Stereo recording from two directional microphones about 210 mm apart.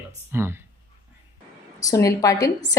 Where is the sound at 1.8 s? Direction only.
15° left (ahead or behind).